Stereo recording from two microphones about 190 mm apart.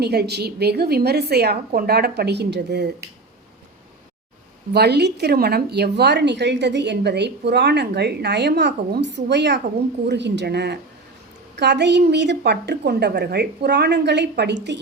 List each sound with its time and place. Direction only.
0.0 s speech: 55° right (ahead or behind)
4.7 s speech: 60° right (ahead or behind)